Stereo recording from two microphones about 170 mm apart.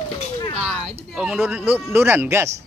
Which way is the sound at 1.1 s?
5° right (ahead or behind).